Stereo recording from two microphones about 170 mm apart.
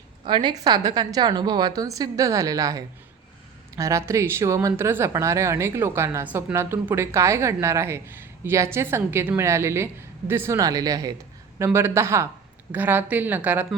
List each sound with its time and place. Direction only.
0.3 s a woman's voice: 25° right (ahead or behind); by 13.7 s 10° right (ahead or behind)